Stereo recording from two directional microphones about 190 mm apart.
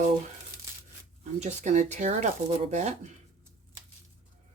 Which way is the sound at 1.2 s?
35° right (ahead or behind).